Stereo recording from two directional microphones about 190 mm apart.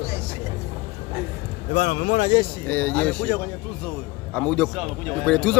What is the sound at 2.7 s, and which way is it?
A man's voice, 10° left (ahead or behind).